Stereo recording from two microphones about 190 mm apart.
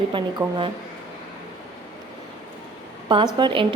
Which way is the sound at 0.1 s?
25° right (ahead or behind).